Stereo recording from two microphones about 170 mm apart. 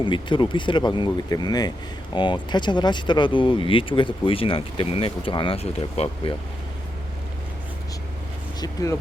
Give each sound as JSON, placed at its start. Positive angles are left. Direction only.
{"t": 0.0, "sound": "speech", "side_deg": 30}
{"t": 8.6, "sound": "speech", "side_deg": 20}